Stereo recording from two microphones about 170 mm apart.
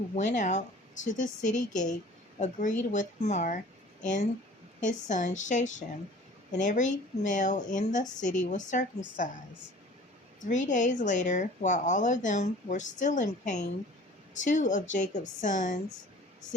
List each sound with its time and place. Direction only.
0.2 s speech: 45° left (ahead or behind)
10.4 s speech: 45° left (ahead or behind)